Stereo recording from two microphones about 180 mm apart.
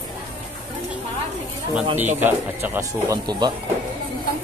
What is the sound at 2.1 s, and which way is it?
Speech, 10° right (ahead or behind).